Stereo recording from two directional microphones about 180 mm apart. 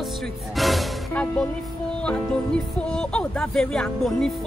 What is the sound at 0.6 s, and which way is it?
Music, centre (ahead or behind).